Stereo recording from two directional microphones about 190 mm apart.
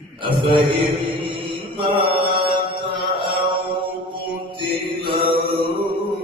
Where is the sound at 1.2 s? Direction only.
25° right (ahead or behind).